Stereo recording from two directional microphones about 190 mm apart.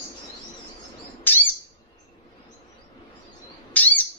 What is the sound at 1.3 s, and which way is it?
Bird, 10° left (ahead or behind).